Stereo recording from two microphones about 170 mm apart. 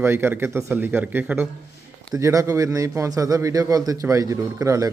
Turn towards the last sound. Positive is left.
turn(degrees=-15)  # may be behind; listen again after turning